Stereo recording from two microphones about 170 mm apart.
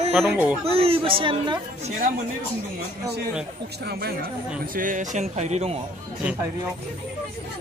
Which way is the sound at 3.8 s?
65° right (ahead or behind).